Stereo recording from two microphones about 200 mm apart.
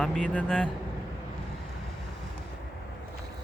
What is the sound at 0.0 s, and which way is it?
Speech, 5° left (ahead or behind).